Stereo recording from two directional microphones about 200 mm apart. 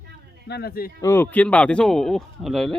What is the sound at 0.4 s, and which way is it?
Speech, 55° left (ahead or behind).